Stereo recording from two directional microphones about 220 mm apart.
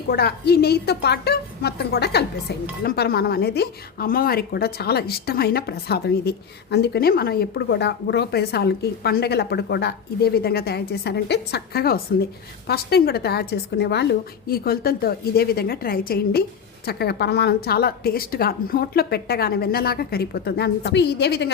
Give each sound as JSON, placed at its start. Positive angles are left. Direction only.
{"t": 0.1, "sound": "a woman's voice", "side_deg": 45}